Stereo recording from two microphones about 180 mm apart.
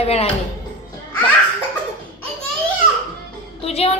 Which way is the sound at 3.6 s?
35° left (ahead or behind).